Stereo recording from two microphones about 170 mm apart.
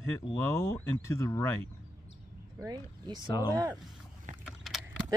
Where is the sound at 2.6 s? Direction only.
25° right (ahead or behind).